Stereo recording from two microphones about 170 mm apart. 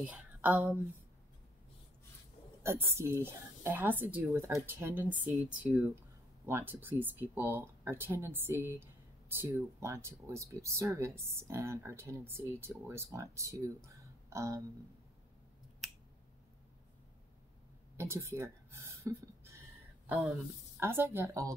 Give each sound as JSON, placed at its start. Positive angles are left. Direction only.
{"t": 0.0, "sound": "speech", "side_deg": -10}
{"t": 2.6, "sound": "speech", "side_deg": -15}
{"t": 14.3, "sound": "a sound", "side_deg": -15}
{"t": 15.8, "sound": "finger snapping", "side_deg": 0}
{"t": 17.9, "sound": "speech", "side_deg": -15}
{"t": 20.8, "sound": "speech", "side_deg": -15}